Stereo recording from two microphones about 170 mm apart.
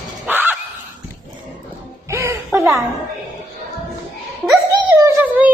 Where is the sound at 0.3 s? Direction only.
10° right (ahead or behind).